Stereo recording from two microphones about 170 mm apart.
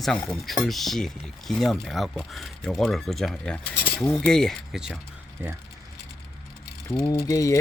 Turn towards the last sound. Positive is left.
turn(degrees=20)  # may be behind; listen again after turning